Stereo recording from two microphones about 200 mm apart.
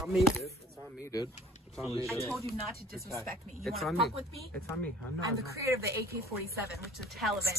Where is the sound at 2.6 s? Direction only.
Centre (ahead or behind).